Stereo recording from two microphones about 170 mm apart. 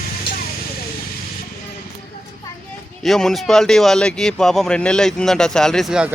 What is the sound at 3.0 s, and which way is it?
Speech, centre (ahead or behind).